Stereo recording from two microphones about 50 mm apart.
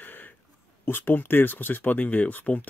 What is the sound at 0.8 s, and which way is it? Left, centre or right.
Speech, left.